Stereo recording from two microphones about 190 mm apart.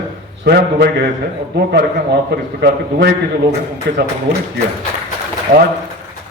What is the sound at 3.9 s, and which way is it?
Speech, 65° right (ahead or behind).